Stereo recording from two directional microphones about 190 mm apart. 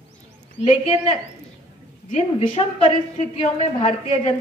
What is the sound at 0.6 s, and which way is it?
Speech, 30° left (ahead or behind).